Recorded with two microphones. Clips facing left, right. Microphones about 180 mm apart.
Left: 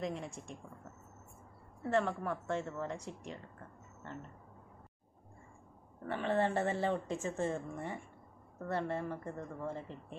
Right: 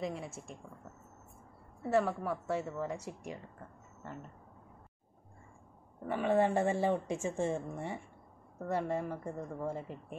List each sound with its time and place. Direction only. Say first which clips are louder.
0.0 s a woman's voice: right 1 dB; centre (ahead or behind)
1.9 s speech: right 2 dB; 10° right (ahead or behind)
6.0 s speech: right 4 dB; 10° right (ahead or behind)